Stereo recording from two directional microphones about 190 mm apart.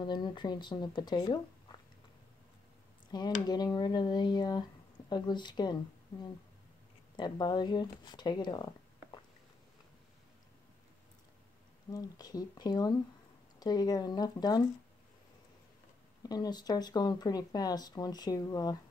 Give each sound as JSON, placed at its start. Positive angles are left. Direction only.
{"t": 0.0, "sound": "speech", "side_deg": 25}
{"t": 3.1, "sound": "speech", "side_deg": 20}
{"t": 7.2, "sound": "speech", "side_deg": 20}
{"t": 11.9, "sound": "speech", "side_deg": 20}
{"t": 16.2, "sound": "speech", "side_deg": 20}